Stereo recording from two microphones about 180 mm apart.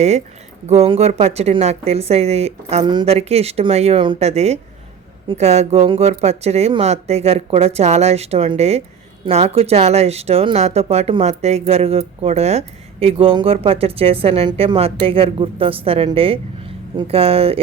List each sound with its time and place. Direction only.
0.7 s speech: 35° right (ahead or behind)